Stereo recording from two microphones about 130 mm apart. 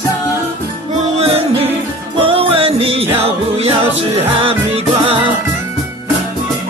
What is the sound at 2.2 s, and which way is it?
Music, 45° right (ahead or behind).